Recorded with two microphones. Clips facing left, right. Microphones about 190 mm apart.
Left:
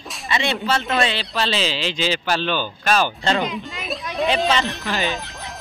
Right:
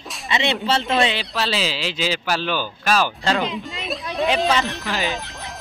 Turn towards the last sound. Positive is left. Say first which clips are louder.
# left 1 dB
turn(degrees=0)  # may be behind; listen again after turning